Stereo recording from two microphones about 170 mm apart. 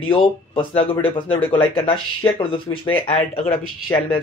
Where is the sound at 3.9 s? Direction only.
15° left (ahead or behind).